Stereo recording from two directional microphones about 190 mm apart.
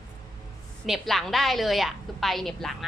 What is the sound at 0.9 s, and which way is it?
A woman's voice, centre (ahead or behind).